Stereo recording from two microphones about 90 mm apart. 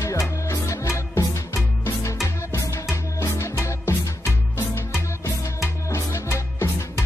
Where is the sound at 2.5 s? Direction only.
30° left (ahead or behind).